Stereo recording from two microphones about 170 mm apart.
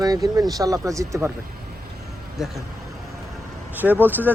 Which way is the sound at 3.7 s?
10° right (ahead or behind).